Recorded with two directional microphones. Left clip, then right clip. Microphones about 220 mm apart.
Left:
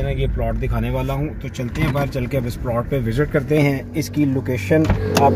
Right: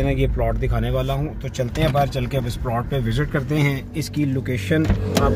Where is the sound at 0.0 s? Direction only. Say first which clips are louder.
Right 2 dB; 25° right (ahead or behind).